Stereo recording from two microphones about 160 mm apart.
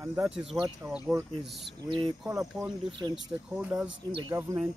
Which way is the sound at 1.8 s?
30° right (ahead or behind).